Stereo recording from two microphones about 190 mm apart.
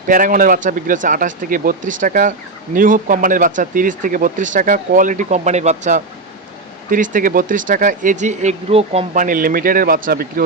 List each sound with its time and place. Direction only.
0.1 s speech: 45° right (ahead or behind)